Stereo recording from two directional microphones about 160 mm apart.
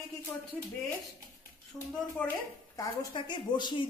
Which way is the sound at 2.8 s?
25° left (ahead or behind).